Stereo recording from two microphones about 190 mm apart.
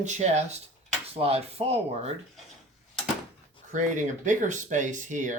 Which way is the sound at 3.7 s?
40° right (ahead or behind).